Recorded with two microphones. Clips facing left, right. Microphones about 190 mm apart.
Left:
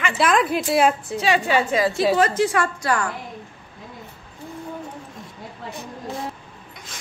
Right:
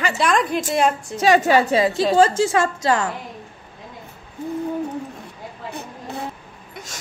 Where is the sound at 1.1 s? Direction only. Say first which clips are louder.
Right 4 dB; 45° right (ahead or behind).